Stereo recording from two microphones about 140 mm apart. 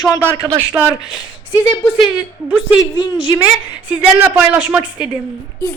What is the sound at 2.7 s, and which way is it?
Speech, 35° left (ahead or behind).